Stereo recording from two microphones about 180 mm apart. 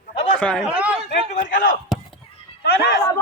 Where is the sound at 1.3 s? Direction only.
45° left (ahead or behind).